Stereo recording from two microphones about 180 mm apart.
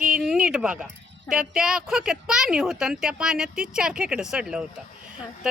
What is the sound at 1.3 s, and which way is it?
A woman's voice, 5° right (ahead or behind).